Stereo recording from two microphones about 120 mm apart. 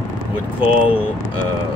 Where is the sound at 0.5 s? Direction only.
15° right (ahead or behind).